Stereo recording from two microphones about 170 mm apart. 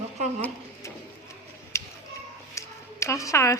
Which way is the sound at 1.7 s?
15° left (ahead or behind).